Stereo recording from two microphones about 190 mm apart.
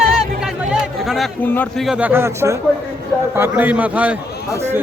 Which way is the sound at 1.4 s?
10° left (ahead or behind).